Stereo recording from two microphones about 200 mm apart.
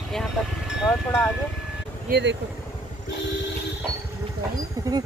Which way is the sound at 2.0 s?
55° right (ahead or behind).